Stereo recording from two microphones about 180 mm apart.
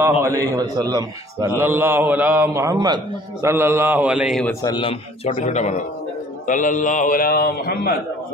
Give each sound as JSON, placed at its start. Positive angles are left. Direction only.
{"t": 0.2, "sound": "a man's voice", "side_deg": -15}
{"t": 4.5, "sound": "a man's voice", "side_deg": 20}
{"t": 5.3, "sound": "a man's voice", "side_deg": 40}